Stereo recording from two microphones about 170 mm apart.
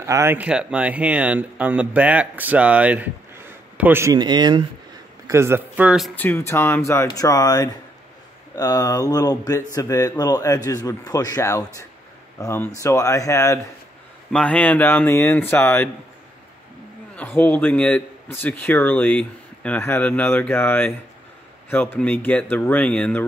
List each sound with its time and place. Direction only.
0.0 s speech: 15° right (ahead or behind)
4.2 s speech: 25° right (ahead or behind); by 6.1 s 5° right (ahead or behind)
6.1 s a man's voice: 10° left (ahead or behind)
14.3 s a man's voice: 5° left (ahead or behind)
17.1 s a man's voice: 10° left (ahead or behind)